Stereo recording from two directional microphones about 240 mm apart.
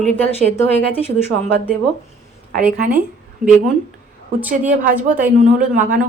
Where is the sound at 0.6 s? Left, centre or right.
Centre.